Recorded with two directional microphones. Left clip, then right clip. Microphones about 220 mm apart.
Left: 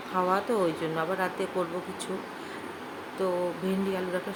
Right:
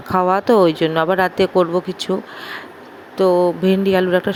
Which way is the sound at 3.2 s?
35° right (ahead or behind).